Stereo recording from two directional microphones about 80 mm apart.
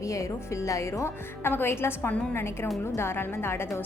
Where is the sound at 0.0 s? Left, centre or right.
Left.